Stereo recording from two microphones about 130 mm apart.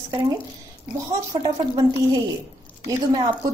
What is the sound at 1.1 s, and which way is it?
A woman's voice, 25° right (ahead or behind).